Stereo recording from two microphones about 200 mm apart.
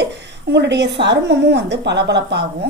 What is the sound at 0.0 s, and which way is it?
Speech, 60° right (ahead or behind).